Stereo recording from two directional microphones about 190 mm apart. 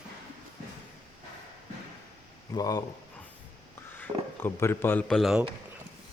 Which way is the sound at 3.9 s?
10° left (ahead or behind).